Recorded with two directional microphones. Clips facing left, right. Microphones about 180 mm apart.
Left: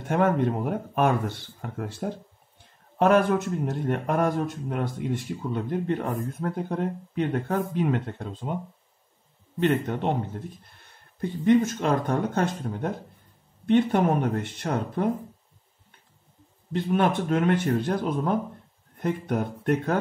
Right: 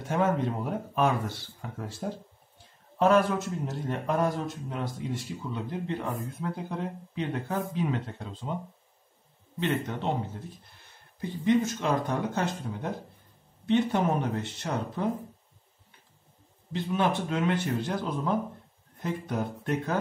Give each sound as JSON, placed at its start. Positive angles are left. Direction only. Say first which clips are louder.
{"t": 0.1, "sound": "speech", "louder": "left 4 dB", "side_deg": 55}
{"t": 9.6, "sound": "speech", "louder": "left 6 dB", "side_deg": 50}
{"t": 11.1, "sound": "speech", "louder": "left 4 dB", "side_deg": 55}
{"t": 16.7, "sound": "speech", "louder": "left 4 dB", "side_deg": 55}